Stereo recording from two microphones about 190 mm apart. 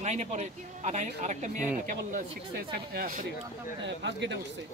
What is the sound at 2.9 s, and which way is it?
Speech, 50° right (ahead or behind).